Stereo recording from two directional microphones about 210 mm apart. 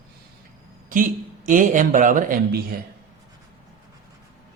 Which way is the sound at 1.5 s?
40° right (ahead or behind).